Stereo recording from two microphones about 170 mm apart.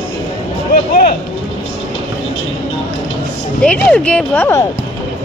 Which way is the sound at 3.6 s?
10° left (ahead or behind).